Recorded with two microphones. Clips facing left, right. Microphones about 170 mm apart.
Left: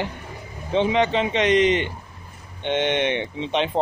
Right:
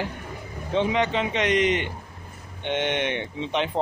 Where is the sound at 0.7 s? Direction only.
25° left (ahead or behind).